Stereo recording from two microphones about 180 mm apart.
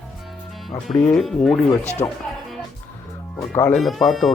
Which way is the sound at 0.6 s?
Centre (ahead or behind).